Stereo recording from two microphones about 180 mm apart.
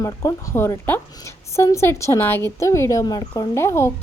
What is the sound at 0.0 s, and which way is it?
Speech, 20° left (ahead or behind).